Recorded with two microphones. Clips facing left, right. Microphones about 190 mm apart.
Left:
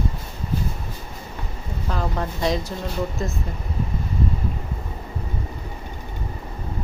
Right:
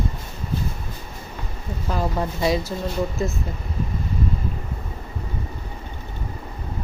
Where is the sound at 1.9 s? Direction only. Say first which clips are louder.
Right 2 dB; 10° right (ahead or behind).